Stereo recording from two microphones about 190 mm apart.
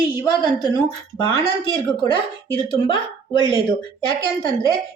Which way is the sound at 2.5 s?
25° left (ahead or behind).